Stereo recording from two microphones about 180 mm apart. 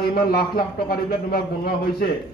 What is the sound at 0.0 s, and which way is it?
A man's voice, 60° left (ahead or behind).